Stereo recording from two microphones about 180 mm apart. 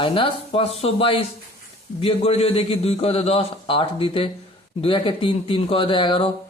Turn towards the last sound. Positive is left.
turn(degrees=30)  # may be behind; listen again after turning